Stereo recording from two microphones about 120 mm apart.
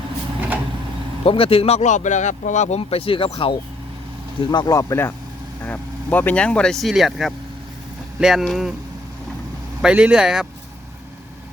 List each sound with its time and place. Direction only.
1.2 s speech: 50° left (ahead or behind)
4.7 s speech: 25° left (ahead or behind); by 8.7 s 5° right (ahead or behind)
9.8 s speech: 10° right (ahead or behind)